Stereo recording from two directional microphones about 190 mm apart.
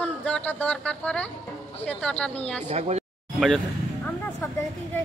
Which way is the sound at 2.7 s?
35° right (ahead or behind).